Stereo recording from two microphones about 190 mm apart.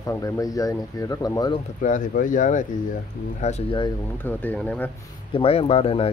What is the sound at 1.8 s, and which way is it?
A man's voice, 45° left (ahead or behind).